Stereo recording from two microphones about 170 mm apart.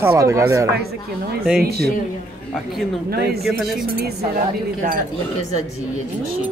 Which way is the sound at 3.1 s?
65° right (ahead or behind).